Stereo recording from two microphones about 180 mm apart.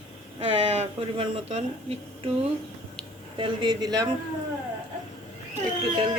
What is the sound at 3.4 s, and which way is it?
Speech, 25° right (ahead or behind).